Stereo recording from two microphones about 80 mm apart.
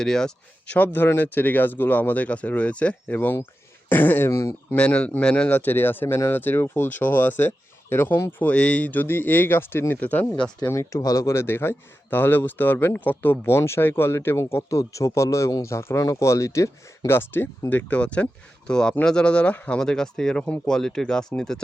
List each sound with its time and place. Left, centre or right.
0.0 s speech: centre
0.7 s speech: left
4.3 s speech: left
4.7 s speech: centre
10.7 s speech: left
11.3 s speech: left; by 21.6 s centre